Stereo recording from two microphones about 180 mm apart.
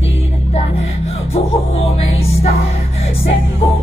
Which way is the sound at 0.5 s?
35° left (ahead or behind).